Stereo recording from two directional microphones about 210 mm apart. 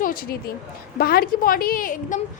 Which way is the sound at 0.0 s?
45° left (ahead or behind).